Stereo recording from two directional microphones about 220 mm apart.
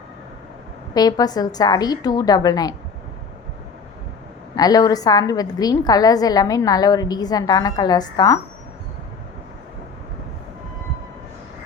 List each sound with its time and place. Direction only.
0.9 s a woman's voice: 15° left (ahead or behind)
4.5 s a woman's voice: 15° left (ahead or behind)